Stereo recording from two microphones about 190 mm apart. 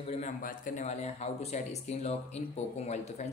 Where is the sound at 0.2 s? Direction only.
45° left (ahead or behind).